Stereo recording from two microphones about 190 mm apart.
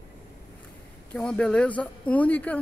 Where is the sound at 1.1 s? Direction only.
5° left (ahead or behind).